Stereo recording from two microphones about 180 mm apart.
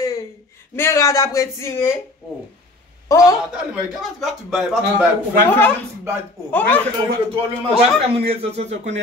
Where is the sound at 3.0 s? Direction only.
20° left (ahead or behind).